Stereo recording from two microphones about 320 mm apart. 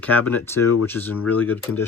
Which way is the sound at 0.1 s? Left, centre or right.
Centre.